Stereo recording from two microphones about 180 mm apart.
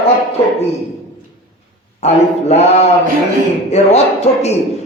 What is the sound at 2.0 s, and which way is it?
Speech, 35° left (ahead or behind).